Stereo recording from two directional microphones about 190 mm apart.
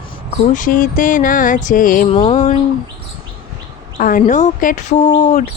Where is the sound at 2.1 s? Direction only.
30° left (ahead or behind).